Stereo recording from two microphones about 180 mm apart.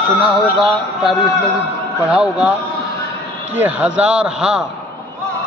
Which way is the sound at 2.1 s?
5° right (ahead or behind).